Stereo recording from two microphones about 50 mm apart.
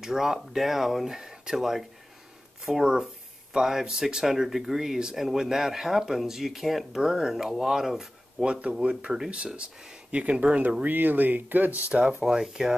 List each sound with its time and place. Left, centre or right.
0.0 s speech: centre
8.5 s speech: centre
10.1 s speech: right
12.2 s speech: centre